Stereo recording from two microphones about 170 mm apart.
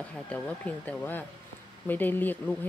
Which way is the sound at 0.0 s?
10° left (ahead or behind).